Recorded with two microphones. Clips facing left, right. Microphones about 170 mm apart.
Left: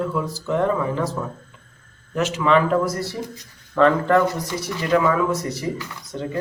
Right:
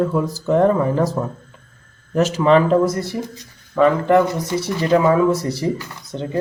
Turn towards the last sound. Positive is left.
turn(degrees=-25)  # may be behind; listen again after turning